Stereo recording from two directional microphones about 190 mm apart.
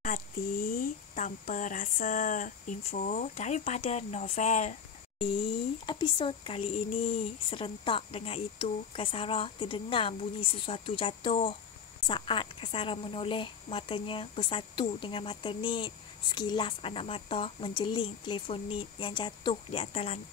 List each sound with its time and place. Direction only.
0.0 s speech: 45° left (ahead or behind)
5.9 s speech: 25° left (ahead or behind)